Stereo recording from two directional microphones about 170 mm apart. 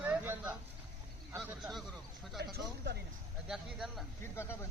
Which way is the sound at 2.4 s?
75° right (ahead or behind).